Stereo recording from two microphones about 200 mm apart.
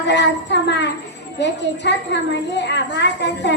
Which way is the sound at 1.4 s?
60° left (ahead or behind).